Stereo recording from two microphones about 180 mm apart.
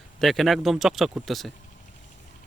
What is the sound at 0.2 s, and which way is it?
Speech, centre (ahead or behind).